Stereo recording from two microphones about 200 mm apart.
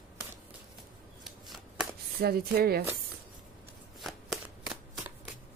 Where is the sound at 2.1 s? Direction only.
50° right (ahead or behind).